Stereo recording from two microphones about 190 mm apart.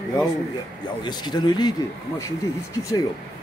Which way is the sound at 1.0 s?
20° left (ahead or behind).